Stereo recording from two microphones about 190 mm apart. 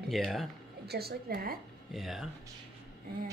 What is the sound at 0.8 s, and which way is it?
Speech, 55° right (ahead or behind).